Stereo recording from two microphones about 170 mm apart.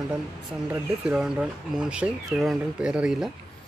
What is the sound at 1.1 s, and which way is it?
Speech, 5° right (ahead or behind).